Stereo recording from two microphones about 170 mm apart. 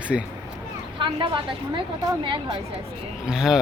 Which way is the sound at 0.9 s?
30° right (ahead or behind).